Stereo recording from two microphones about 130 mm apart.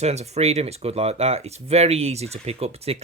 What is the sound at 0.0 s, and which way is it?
Speech, 55° right (ahead or behind).